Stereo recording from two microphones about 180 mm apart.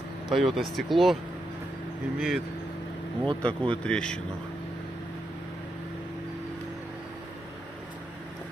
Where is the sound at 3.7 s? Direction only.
5° left (ahead or behind).